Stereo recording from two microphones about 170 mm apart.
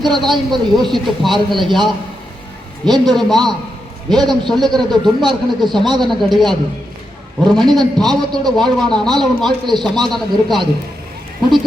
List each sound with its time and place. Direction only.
0.0 s a man's voice: centre (ahead or behind)
5.8 s speech: 25° right (ahead or behind)
6.1 s a man's voice: centre (ahead or behind)